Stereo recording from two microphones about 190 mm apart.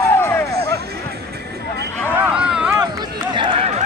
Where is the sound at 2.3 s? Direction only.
5° right (ahead or behind).